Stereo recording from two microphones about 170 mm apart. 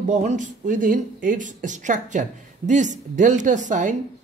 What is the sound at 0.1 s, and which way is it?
Speech, 45° right (ahead or behind).